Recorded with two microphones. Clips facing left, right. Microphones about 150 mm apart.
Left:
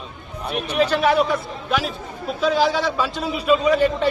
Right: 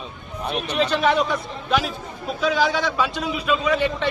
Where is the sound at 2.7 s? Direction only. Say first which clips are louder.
Left 1 dB; 30° left (ahead or behind).